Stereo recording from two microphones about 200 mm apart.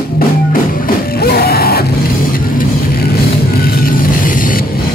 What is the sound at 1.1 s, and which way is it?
Music, 50° left (ahead or behind).